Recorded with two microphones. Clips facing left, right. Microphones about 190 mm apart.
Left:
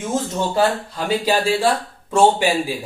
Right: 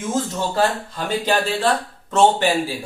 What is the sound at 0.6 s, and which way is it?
Speech, 10° left (ahead or behind).